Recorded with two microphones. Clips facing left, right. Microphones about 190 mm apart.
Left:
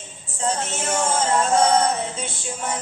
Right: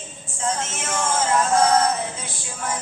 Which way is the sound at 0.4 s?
35° left (ahead or behind).